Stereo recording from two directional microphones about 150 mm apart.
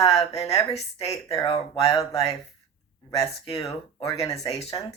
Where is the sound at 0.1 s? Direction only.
40° left (ahead or behind).